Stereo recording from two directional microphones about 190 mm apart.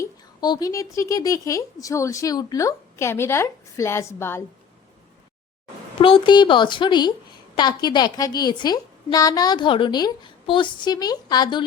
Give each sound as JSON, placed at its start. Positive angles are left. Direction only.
{"t": 0.0, "sound": "speech", "side_deg": 20}
{"t": 6.0, "sound": "a woman's voice", "side_deg": 25}